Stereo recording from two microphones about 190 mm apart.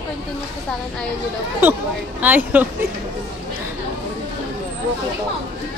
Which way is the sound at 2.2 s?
10° right (ahead or behind).